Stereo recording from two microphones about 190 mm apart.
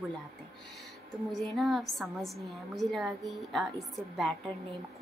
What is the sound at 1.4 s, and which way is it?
A woman's voice, centre (ahead or behind).